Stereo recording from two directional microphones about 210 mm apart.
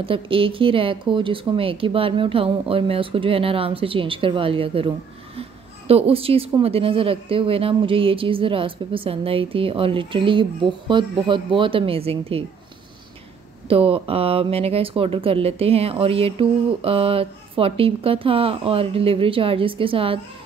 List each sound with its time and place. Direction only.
0.0 s a woman's voice: 25° right (ahead or behind)
13.7 s a woman's voice: 25° right (ahead or behind)